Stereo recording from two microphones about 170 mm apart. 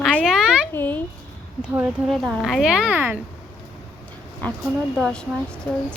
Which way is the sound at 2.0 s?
Centre (ahead or behind).